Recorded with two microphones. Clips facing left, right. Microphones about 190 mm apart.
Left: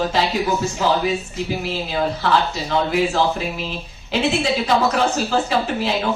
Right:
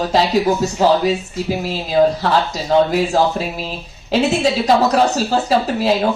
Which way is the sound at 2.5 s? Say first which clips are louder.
Right 6 dB; 40° right (ahead or behind).